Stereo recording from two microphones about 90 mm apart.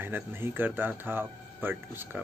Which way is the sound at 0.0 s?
25° right (ahead or behind).